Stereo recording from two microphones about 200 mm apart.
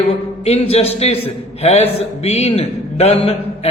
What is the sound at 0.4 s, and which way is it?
Speech, 30° left (ahead or behind).